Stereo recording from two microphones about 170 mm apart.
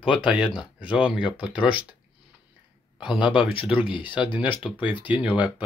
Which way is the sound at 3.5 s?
30° left (ahead or behind).